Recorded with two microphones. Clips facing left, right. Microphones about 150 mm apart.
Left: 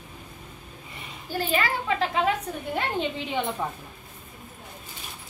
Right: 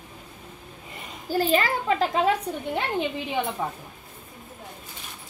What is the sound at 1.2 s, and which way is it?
A woman's voice, 40° right (ahead or behind).